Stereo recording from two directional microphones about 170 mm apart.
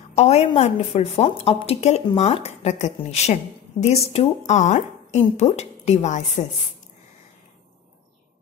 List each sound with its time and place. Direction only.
0.1 s a woman's voice: 40° left (ahead or behind)